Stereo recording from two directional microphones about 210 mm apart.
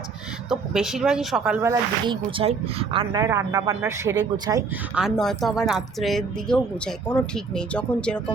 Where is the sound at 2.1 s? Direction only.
25° right (ahead or behind).